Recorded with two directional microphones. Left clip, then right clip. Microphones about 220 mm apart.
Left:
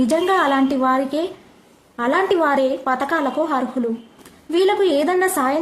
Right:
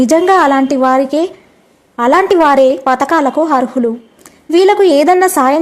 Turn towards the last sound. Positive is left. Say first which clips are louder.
# right 9 dB
turn(degrees=-30)  # may be behind; listen again after turning